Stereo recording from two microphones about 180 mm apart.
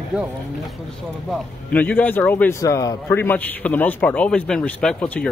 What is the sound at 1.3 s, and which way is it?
A man's voice, 5° left (ahead or behind).